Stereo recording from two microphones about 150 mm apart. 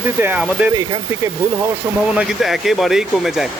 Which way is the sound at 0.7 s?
20° right (ahead or behind).